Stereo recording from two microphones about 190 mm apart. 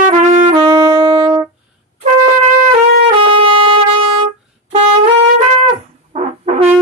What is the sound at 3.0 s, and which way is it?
Trumpet, 30° right (ahead or behind).